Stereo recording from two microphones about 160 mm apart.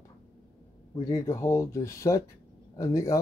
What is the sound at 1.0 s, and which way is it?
Speech, 20° left (ahead or behind).